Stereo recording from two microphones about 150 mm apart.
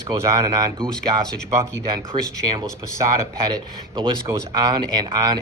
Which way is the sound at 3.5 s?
30° right (ahead or behind).